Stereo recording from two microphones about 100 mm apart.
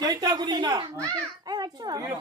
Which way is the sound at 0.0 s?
45° right (ahead or behind).